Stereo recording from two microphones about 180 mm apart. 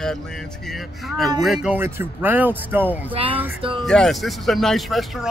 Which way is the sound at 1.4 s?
5° right (ahead or behind).